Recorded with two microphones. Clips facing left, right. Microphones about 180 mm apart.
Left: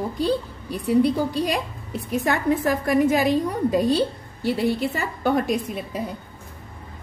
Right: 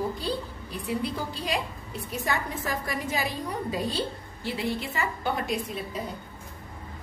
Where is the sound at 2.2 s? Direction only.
55° left (ahead or behind).